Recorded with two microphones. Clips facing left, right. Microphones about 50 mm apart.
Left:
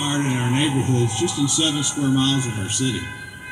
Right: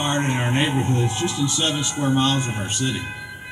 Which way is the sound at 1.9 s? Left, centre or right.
Right.